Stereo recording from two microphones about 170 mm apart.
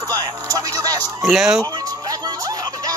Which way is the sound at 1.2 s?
Centre (ahead or behind).